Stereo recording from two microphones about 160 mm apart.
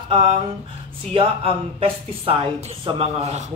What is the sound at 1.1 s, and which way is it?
A man's voice, 35° right (ahead or behind).